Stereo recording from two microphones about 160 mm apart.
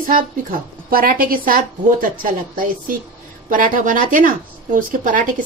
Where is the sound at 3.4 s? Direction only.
60° right (ahead or behind).